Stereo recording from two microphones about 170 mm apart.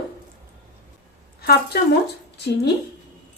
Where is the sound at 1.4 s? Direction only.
65° left (ahead or behind).